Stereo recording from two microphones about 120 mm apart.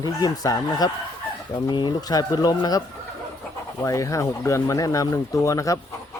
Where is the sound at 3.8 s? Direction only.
25° left (ahead or behind).